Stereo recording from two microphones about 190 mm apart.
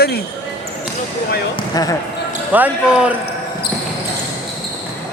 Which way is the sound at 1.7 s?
20° left (ahead or behind).